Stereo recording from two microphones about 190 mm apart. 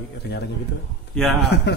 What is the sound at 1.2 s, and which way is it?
Speech, 5° left (ahead or behind).